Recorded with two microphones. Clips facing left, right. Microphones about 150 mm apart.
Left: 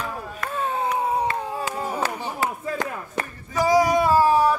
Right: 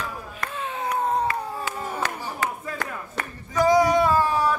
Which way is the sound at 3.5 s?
10° left (ahead or behind).